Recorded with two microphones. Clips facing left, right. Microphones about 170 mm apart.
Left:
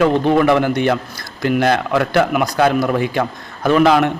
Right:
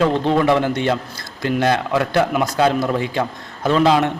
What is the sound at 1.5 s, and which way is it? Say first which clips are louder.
A man's voice: left 2 dB; 20° right (ahead or behind).